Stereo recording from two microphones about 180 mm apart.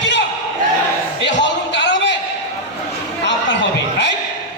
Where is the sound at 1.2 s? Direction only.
75° left (ahead or behind).